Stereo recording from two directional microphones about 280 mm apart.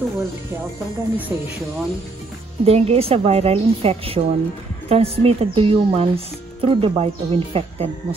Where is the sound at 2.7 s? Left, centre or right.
Right.